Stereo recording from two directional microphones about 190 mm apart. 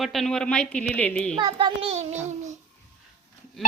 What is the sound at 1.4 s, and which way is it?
Child singing, 25° right (ahead or behind).